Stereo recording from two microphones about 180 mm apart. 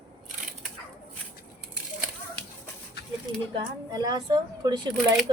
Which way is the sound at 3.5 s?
20° right (ahead or behind).